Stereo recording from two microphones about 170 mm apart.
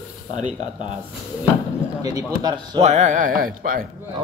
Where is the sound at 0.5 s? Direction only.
30° left (ahead or behind).